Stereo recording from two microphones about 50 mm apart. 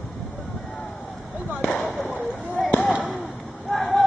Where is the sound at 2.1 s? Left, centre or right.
Left.